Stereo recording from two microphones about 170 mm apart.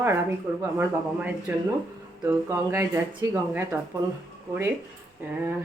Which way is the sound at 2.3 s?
15° right (ahead or behind).